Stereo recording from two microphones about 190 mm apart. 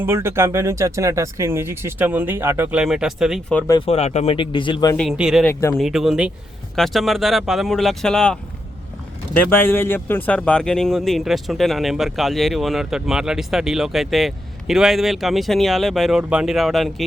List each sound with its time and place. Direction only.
0.0 s speech: 10° right (ahead or behind)
3.7 s speech: 30° left (ahead or behind)
4.9 s speech: centre (ahead or behind)
5.5 s speech: 15° left (ahead or behind)
5.7 s speech: centre (ahead or behind)